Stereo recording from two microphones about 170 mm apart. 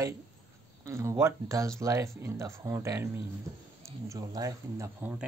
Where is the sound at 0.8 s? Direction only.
15° right (ahead or behind).